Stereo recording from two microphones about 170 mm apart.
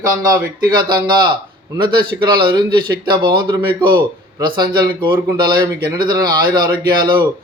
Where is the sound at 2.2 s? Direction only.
25° right (ahead or behind).